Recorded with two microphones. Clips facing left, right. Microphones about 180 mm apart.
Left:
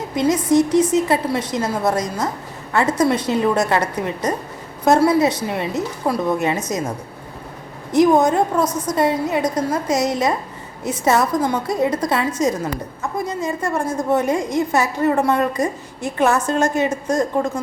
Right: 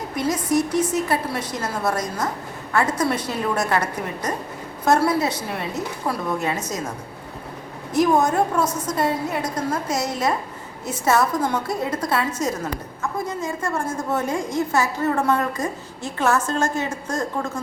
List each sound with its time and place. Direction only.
0.2 s a woman's voice: 20° left (ahead or behind)
4.9 s a woman's voice: 20° left (ahead or behind)
7.9 s a woman's voice: 20° left (ahead or behind)